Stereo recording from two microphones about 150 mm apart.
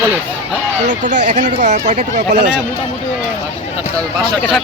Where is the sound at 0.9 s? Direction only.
55° right (ahead or behind).